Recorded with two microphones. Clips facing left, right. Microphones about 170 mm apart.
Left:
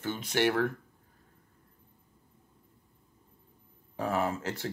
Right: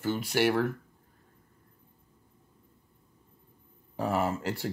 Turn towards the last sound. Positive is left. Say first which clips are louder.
# right 2 dB
turn(degrees=-10)  # may be behind; listen again after turning